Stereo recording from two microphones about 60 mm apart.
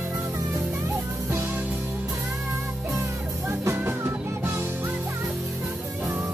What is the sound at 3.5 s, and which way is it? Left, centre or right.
Music, right.